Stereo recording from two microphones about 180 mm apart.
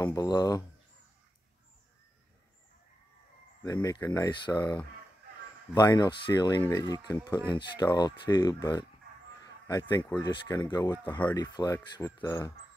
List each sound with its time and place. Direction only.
0.0 s speech: 20° left (ahead or behind)
3.6 s speech: 20° left (ahead or behind)
5.8 s speech: 20° left (ahead or behind)